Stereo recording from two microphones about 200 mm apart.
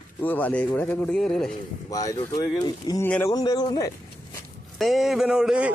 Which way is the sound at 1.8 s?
15° left (ahead or behind).